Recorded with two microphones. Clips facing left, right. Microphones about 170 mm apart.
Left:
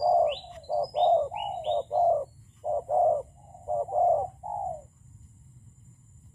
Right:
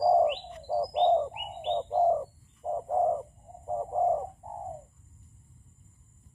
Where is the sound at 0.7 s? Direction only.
20° left (ahead or behind).